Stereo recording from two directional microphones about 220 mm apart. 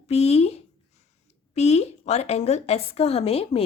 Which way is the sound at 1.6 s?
30° left (ahead or behind).